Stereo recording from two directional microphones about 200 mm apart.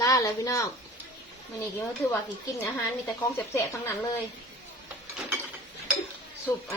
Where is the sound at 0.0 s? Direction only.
20° left (ahead or behind).